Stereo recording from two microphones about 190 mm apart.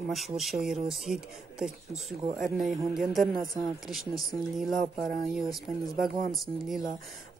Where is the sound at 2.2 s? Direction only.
25° right (ahead or behind).